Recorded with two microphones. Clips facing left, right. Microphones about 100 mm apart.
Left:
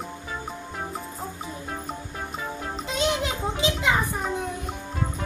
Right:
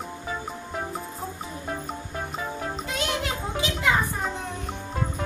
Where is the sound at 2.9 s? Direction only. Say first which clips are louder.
Left 5 dB; 20° left (ahead or behind).